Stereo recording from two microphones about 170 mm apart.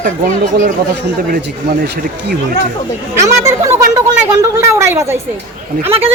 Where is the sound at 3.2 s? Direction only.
20° right (ahead or behind).